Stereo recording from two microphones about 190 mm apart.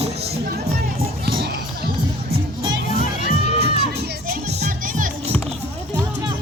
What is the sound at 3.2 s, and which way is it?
Crowd, 60° right (ahead or behind).